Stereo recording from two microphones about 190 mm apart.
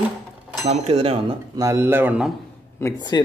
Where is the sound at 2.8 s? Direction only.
25° left (ahead or behind).